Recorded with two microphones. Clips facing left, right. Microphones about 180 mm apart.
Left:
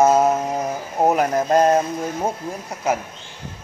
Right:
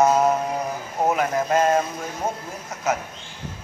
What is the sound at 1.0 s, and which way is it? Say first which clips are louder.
Speech: left 4 dB; 35° left (ahead or behind).